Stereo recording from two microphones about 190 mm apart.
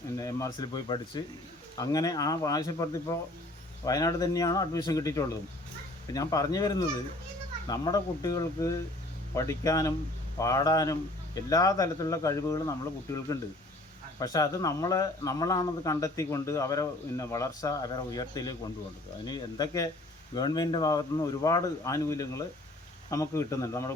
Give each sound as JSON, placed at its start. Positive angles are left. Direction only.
{"t": 0.2, "sound": "speech", "side_deg": 15}